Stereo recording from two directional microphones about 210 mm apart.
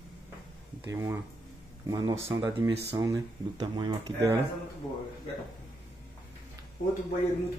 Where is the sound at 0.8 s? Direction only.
15° right (ahead or behind).